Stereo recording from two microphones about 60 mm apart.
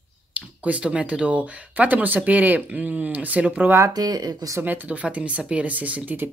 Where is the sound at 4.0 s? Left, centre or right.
Right.